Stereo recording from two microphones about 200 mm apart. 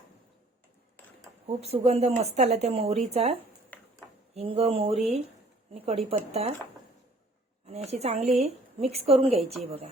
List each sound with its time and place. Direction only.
1.5 s a woman's voice: 30° right (ahead or behind)
3.7 s a sound: 10° left (ahead or behind)
4.4 s speech: 30° right (ahead or behind)
7.7 s a woman's voice: 30° right (ahead or behind)